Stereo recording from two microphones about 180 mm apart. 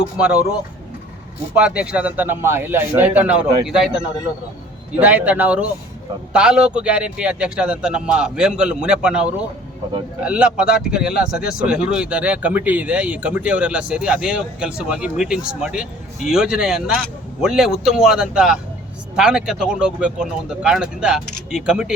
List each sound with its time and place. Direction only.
0.0 s speech: 5° right (ahead or behind)
1.5 s a man's voice: 5° right (ahead or behind)